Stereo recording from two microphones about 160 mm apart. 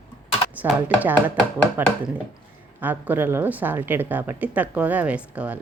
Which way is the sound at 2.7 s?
10° right (ahead or behind).